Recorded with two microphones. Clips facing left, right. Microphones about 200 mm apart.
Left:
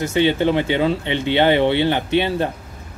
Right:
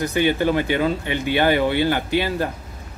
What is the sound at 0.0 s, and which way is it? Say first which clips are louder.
Speech: left 2 dB; 25° left (ahead or behind).